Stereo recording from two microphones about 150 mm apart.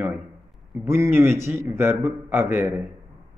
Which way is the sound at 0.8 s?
20° right (ahead or behind).